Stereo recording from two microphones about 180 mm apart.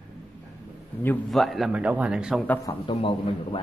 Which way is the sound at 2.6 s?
30° left (ahead or behind).